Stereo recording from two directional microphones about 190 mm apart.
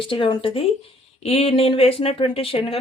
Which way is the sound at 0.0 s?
25° left (ahead or behind).